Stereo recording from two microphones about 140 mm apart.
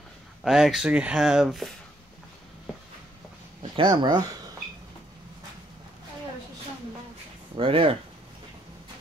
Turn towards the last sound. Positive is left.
turn(degrees=-40)  # may be behind; listen again after turning